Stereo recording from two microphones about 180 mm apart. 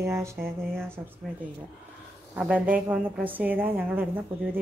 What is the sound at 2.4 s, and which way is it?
A woman's voice, 10° right (ahead or behind).